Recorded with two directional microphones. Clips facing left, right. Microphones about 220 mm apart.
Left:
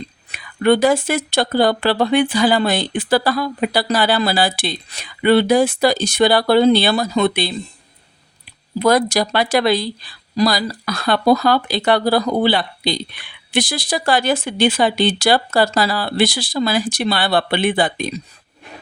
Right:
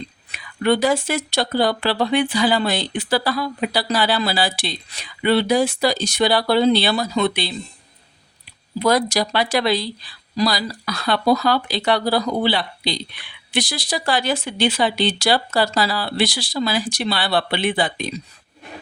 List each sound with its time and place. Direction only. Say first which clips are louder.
0.3 s speech: left 4 dB; 50° left (ahead or behind)
8.8 s speech: left 3 dB; 50° left (ahead or behind)